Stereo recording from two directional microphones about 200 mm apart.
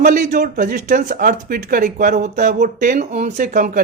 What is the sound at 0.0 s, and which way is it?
Speech, 40° right (ahead or behind).